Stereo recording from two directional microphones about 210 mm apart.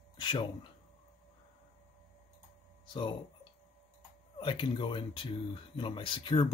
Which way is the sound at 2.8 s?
20° left (ahead or behind).